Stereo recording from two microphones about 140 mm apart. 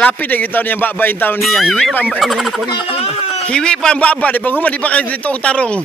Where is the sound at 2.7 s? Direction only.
45° left (ahead or behind).